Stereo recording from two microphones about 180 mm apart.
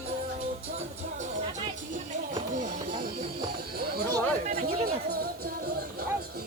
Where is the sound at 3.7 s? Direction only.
55° right (ahead or behind).